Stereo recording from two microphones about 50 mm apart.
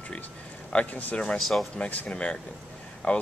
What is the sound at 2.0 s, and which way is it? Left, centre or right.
Speech, left.